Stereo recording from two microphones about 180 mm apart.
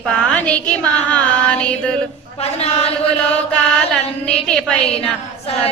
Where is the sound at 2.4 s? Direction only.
35° left (ahead or behind).